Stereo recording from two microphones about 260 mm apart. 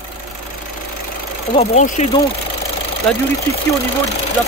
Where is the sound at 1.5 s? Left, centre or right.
Left.